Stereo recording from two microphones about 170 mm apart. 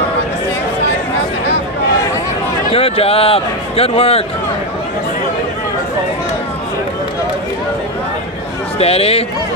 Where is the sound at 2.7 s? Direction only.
35° left (ahead or behind).